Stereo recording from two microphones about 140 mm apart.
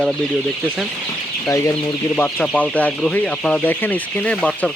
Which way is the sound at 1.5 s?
20° left (ahead or behind).